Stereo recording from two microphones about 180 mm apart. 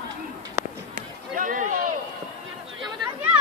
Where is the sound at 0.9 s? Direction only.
45° right (ahead or behind).